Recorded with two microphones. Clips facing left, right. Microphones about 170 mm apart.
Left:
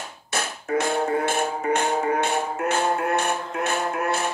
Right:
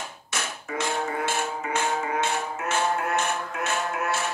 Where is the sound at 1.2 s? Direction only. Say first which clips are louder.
Left 4 dB; 60° left (ahead or behind).